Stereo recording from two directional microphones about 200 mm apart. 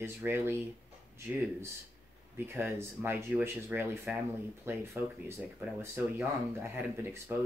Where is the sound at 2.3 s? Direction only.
10° right (ahead or behind).